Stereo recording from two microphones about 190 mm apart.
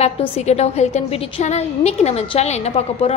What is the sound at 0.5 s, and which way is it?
A woman's voice, 35° left (ahead or behind).